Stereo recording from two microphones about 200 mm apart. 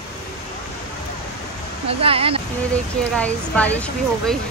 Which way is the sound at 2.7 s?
5° left (ahead or behind).